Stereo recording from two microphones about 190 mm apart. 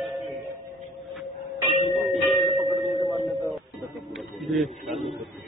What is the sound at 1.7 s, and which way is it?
Church bell, 35° left (ahead or behind).